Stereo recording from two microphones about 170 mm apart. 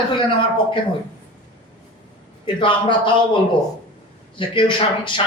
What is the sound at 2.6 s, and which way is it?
Speech, 30° left (ahead or behind).